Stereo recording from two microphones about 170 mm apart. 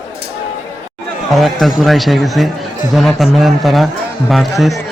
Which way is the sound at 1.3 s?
Centre (ahead or behind).